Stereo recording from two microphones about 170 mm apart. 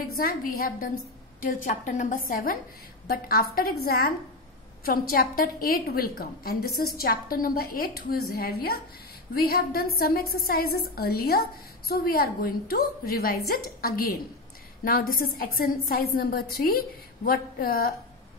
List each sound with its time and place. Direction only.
0.0 s a woman's voice: 60° left (ahead or behind)